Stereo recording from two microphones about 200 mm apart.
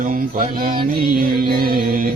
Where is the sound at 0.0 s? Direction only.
45° right (ahead or behind).